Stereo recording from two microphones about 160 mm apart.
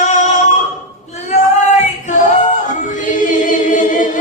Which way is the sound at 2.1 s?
50° left (ahead or behind).